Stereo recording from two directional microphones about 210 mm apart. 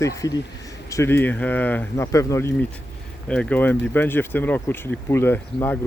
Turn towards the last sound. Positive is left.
turn(degrees=10)  # may be behind; listen again after turning